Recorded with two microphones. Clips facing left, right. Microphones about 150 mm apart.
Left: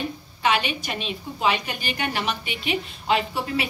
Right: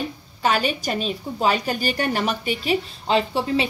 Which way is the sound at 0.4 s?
40° right (ahead or behind).